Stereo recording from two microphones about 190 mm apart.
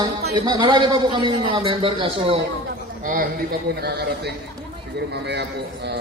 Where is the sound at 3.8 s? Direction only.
60° right (ahead or behind).